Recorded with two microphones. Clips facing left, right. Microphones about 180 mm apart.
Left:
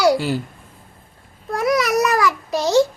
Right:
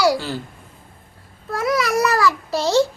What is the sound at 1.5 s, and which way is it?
Babbling, 20° left (ahead or behind).